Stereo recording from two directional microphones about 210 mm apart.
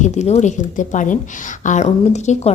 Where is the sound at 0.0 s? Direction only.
35° left (ahead or behind).